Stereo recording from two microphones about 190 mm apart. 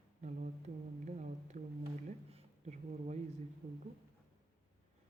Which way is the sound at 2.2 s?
35° right (ahead or behind).